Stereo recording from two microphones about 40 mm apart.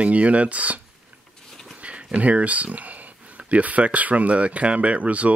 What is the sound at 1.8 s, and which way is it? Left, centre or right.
Speech, right.